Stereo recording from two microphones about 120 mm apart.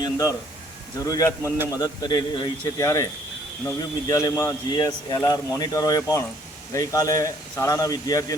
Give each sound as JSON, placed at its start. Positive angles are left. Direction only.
{"t": 0.0, "sound": "a man's voice", "side_deg": 30}